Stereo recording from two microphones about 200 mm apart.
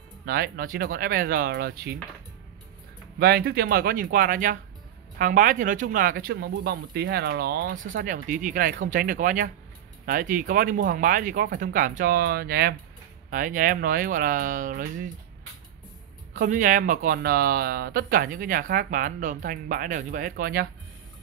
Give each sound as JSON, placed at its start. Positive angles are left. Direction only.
{"t": 0.2, "sound": "speech", "side_deg": -50}
{"t": 3.2, "sound": "speech", "side_deg": -50}
{"t": 7.9, "sound": "speech", "side_deg": -40}
{"t": 16.3, "sound": "speech", "side_deg": -40}